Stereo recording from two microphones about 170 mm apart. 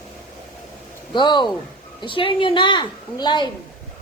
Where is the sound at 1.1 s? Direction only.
25° left (ahead or behind).